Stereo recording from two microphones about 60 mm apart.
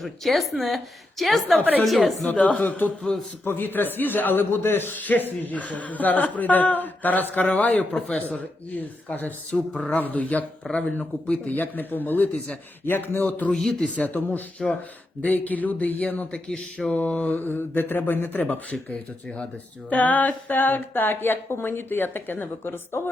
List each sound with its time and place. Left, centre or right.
0.0 s speech: centre
2.2 s a man's voice: centre
9.5 s a man's voice: centre; by 13.2 s left
13.2 s a man's voice: left
13.5 s a sound: centre
13.8 s a man's voice: left
16.5 s a sound: centre
16.9 s a man's voice: left